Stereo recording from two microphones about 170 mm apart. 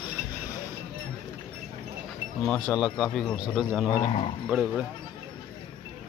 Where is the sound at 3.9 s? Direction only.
25° left (ahead or behind).